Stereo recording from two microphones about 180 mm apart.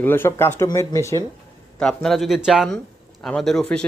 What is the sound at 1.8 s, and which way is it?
Speech, 5° left (ahead or behind).